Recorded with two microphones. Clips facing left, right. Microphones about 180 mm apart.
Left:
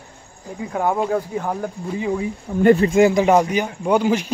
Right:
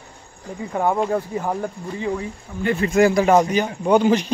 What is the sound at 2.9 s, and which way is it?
Speech, 20° left (ahead or behind).